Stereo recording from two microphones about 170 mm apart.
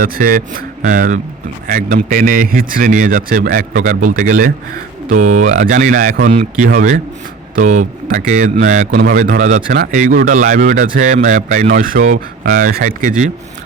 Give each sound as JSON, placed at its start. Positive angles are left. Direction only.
{"t": 0.0, "sound": "speech", "side_deg": -55}
{"t": 9.9, "sound": "speech", "side_deg": -50}